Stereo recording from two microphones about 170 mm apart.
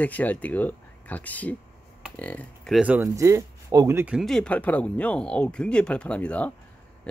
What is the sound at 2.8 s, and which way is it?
Speech, 10° right (ahead or behind).